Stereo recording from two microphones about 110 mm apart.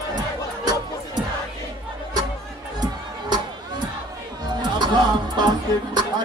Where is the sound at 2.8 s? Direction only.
40° right (ahead or behind).